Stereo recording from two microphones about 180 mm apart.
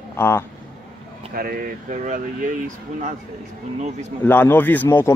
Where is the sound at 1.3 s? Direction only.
55° right (ahead or behind).